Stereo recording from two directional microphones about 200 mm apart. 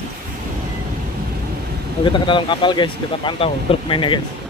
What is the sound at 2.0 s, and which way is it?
Speech, 25° left (ahead or behind).